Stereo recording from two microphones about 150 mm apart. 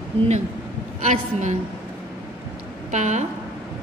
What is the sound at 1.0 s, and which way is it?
Speech, 50° right (ahead or behind).